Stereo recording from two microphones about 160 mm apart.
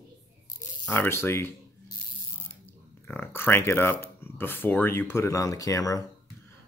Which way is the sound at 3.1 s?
15° left (ahead or behind).